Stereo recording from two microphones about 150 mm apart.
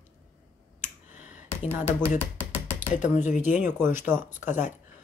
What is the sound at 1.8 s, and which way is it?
Music, 15° left (ahead or behind).